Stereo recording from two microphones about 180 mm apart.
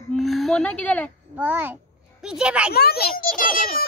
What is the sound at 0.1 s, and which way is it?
Speech, centre (ahead or behind).